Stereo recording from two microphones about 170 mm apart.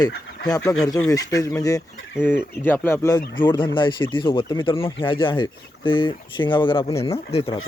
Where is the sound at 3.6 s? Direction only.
30° left (ahead or behind).